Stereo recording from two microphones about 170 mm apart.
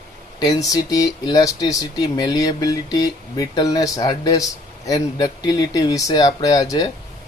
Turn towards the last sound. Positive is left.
turn(degrees=20)  # may be behind; listen again after turning